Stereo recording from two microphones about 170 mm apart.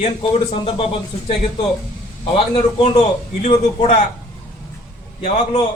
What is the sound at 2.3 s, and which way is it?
Speech, 30° left (ahead or behind).